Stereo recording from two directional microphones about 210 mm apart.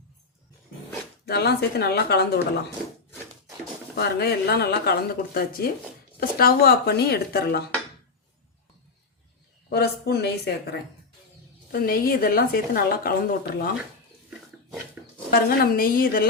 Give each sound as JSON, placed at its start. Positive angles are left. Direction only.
{"t": 1.2, "sound": "a woman's voice", "side_deg": 50}
{"t": 3.9, "sound": "a woman's voice", "side_deg": 50}
{"t": 9.6, "sound": "a woman's voice", "side_deg": 50}
{"t": 15.3, "sound": "a woman's voice", "side_deg": 45}